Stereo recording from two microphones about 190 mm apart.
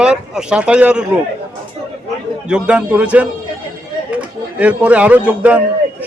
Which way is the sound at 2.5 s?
5° right (ahead or behind).